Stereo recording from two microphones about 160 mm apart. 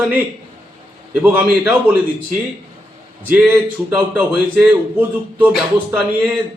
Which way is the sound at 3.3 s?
10° right (ahead or behind).